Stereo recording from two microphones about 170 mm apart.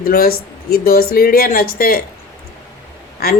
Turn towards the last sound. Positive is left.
turn(degrees=65)  # may be behind; listen again after turning